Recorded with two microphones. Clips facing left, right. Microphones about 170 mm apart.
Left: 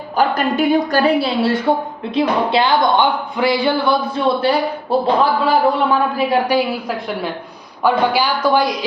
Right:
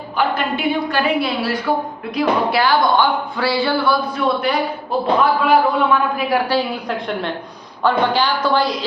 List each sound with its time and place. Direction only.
0.2 s a woman's voice: 40° left (ahead or behind)
6.5 s speech: 10° left (ahead or behind)